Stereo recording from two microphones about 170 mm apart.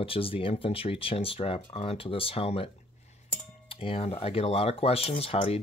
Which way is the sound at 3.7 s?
35° left (ahead or behind).